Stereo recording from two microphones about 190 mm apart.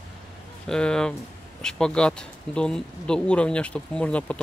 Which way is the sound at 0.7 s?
5° left (ahead or behind).